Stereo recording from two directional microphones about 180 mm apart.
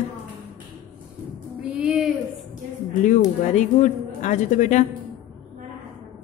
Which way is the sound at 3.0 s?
45° left (ahead or behind).